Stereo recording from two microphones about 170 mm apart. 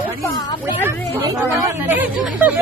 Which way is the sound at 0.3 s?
25° left (ahead or behind).